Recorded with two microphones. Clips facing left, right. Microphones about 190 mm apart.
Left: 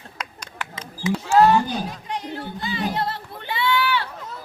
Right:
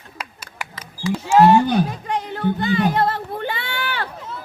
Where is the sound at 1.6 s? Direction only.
60° right (ahead or behind).